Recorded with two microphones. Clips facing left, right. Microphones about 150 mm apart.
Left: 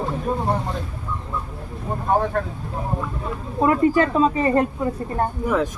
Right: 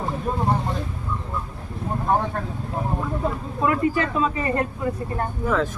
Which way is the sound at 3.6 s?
35° left (ahead or behind).